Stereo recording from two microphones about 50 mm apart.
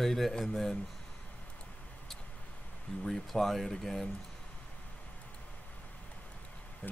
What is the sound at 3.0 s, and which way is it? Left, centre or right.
Speech, centre.